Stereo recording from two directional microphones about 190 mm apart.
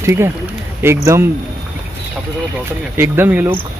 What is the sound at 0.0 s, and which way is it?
Speech, 15° right (ahead or behind).